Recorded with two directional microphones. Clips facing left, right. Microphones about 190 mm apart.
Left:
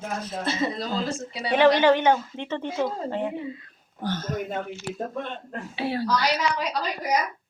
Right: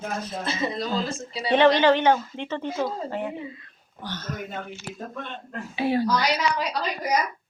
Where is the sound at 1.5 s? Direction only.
10° left (ahead or behind).